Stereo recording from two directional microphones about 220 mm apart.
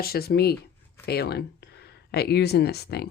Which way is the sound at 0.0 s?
45° left (ahead or behind).